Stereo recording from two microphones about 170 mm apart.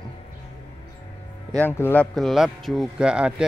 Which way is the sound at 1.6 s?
10° left (ahead or behind).